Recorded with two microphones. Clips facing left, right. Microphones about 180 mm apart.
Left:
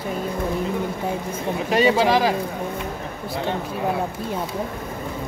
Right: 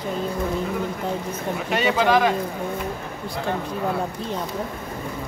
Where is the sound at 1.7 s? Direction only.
35° left (ahead or behind).